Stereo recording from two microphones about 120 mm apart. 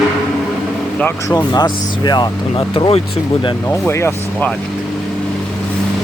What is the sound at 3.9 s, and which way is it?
Speech, 20° left (ahead or behind).